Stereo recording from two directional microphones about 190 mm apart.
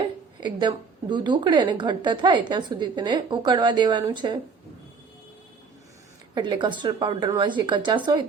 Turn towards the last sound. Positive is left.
turn(degrees=-25)  # may be behind; listen again after turning